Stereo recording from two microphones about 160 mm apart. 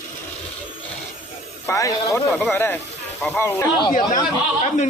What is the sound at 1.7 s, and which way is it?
Speech, 20° left (ahead or behind).